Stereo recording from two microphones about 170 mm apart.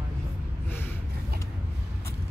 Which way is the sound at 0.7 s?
10° left (ahead or behind).